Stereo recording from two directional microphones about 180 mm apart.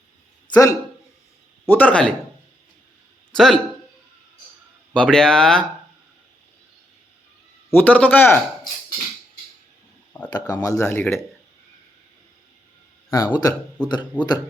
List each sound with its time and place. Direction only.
0.5 s speech: 20° left (ahead or behind)
3.3 s speech: centre (ahead or behind)
4.9 s speech: 5° left (ahead or behind)
7.7 s speech: 10° left (ahead or behind)
10.2 s speech: 20° left (ahead or behind)
13.1 s speech: 20° left (ahead or behind)